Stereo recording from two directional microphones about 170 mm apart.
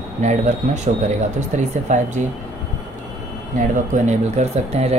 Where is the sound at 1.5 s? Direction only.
45° right (ahead or behind).